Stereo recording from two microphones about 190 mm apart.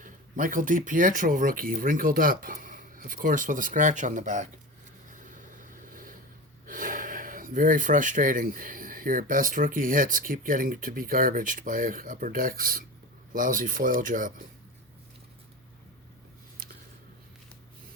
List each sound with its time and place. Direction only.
0.0 s speech: 45° right (ahead or behind)
5.6 s vehicle: 45° right (ahead or behind)
6.7 s speech: 45° right (ahead or behind)